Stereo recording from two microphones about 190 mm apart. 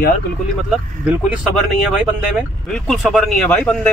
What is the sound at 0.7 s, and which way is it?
Speech, 5° right (ahead or behind).